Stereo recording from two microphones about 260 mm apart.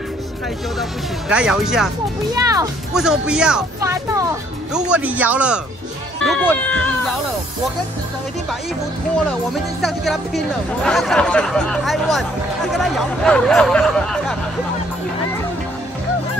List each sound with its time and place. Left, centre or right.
1.3 s speech: centre
2.3 s a child's voice: centre
2.9 s speech: centre
6.2 s speech: centre
9.5 s speech: centre